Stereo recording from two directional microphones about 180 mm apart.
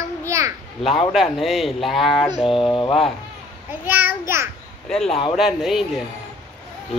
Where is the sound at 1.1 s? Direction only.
Centre (ahead or behind).